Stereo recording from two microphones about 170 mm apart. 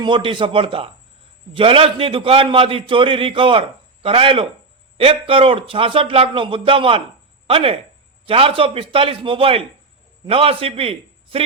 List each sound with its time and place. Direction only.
0.0 s a man's voice: 30° right (ahead or behind)